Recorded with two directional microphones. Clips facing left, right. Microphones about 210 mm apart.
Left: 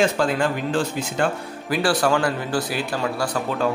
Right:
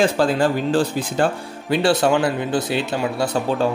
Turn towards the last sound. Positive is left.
turn(degrees=-25)  # may be behind; listen again after turning